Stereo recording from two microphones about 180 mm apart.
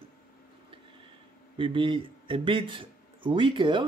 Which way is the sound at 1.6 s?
30° right (ahead or behind).